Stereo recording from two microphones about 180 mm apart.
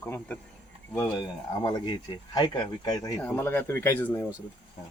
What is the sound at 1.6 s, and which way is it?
Speech, 25° left (ahead or behind).